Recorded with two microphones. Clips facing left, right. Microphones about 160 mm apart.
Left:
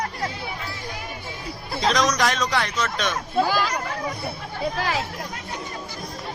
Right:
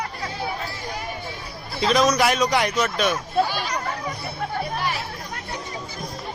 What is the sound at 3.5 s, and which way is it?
Speech, 90° left.